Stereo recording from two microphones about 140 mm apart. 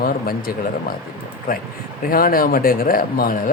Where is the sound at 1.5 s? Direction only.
90° left.